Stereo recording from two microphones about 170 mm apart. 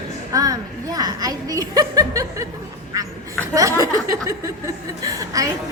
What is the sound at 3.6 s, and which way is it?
A woman's voice, 20° right (ahead or behind).